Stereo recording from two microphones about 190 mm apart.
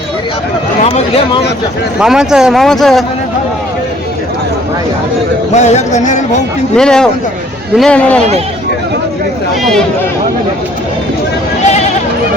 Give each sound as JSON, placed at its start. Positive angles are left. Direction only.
{"t": 0.9, "sound": "speech", "side_deg": 30}
{"t": 2.0, "sound": "a man's voice", "side_deg": -5}
{"t": 5.5, "sound": "speech", "side_deg": 35}
{"t": 6.7, "sound": "a man's voice", "side_deg": 5}